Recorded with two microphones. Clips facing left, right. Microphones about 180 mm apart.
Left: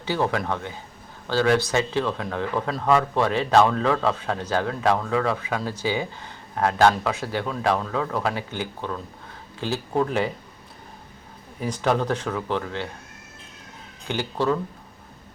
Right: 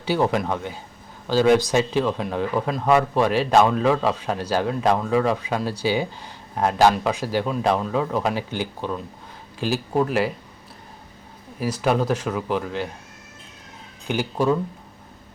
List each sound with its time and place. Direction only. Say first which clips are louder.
0.0 s speech: right 3 dB; 15° right (ahead or behind)
11.6 s speech: right 2 dB; 5° right (ahead or behind)
14.1 s speech: right 3 dB; 10° right (ahead or behind)